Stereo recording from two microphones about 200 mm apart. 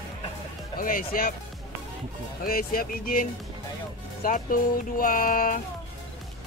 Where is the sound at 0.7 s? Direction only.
45° left (ahead or behind).